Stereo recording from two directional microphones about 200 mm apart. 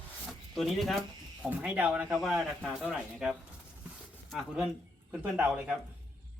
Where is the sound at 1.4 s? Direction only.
5° right (ahead or behind).